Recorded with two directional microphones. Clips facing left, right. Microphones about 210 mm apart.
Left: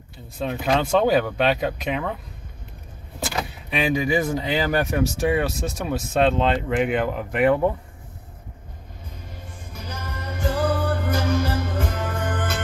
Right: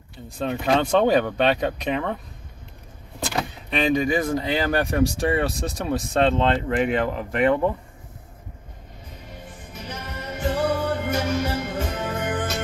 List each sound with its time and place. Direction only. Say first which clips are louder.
0.4 s speech: right 1 dB; 5° left (ahead or behind)
3.2 s speech: right 1 dB; 5° left (ahead or behind)
9.9 s music: even; 25° right (ahead or behind)